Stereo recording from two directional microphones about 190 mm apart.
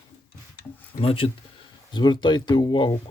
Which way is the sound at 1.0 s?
30° left (ahead or behind).